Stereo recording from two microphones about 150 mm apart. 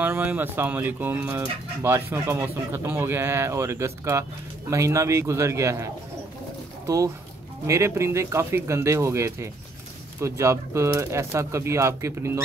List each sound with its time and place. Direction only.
0.0 s speech: 10° right (ahead or behind)
6.9 s speech: 20° right (ahead or behind)